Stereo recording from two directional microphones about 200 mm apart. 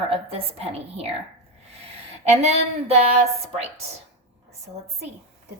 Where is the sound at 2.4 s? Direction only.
35° right (ahead or behind).